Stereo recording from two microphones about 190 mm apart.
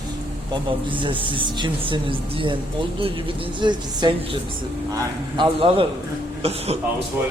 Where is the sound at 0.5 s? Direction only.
25° right (ahead or behind).